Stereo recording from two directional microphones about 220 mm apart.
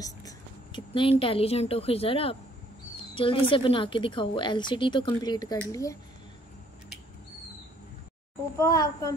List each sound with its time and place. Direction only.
0.0 s a sound: 20° left (ahead or behind)
1.2 s a woman's voice: 25° left (ahead or behind)
8.5 s a child's voice: 15° left (ahead or behind)